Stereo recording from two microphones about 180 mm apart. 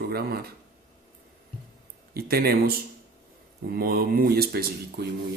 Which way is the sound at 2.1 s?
60° right (ahead or behind).